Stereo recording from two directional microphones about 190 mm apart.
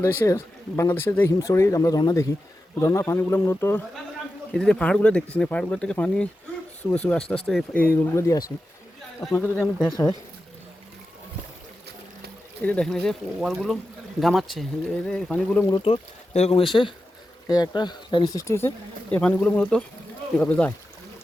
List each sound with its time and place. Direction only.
0.0 s speech: 15° left (ahead or behind)
12.6 s speech: 5° left (ahead or behind)
15.7 s speech: 30° left (ahead or behind); by 20.7 s 10° left (ahead or behind)